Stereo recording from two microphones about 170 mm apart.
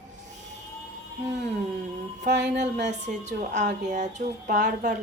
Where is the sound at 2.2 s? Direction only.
80° right.